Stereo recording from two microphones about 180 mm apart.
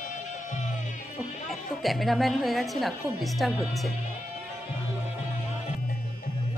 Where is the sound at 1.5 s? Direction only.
Centre (ahead or behind).